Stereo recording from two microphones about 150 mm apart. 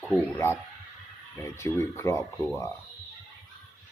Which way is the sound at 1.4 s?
15° left (ahead or behind).